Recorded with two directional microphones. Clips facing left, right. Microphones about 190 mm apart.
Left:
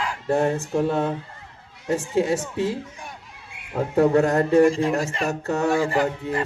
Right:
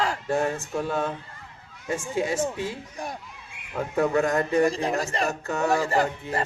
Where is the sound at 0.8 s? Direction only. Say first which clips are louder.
Left 5 dB; 25° left (ahead or behind).